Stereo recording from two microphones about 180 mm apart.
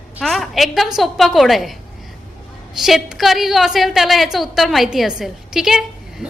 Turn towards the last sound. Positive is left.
turn(degrees=0)  # may be behind; listen again after turning